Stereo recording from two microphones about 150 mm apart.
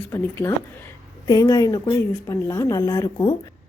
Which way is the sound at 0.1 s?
20° left (ahead or behind).